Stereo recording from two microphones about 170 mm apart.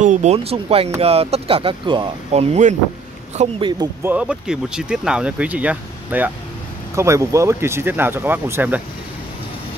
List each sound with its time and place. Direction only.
0.0 s speech: 45° right (ahead or behind)
4.0 s speech: 10° right (ahead or behind)